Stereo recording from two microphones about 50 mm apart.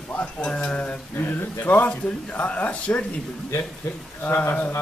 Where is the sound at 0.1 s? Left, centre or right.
Left.